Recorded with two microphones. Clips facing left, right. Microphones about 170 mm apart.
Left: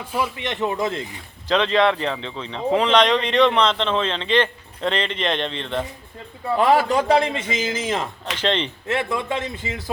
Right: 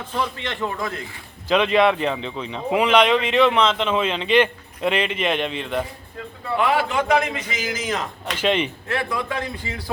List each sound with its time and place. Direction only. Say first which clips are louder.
0.0 s a man's voice: left 1 dB; 10° left (ahead or behind)
1.5 s speech: right 1 dB; 10° right (ahead or behind)
6.6 s a man's voice: left 3 dB; 40° left (ahead or behind)
8.4 s speech: right 2 dB; 10° right (ahead or behind)
8.9 s a man's voice: left 6 dB; 25° left (ahead or behind)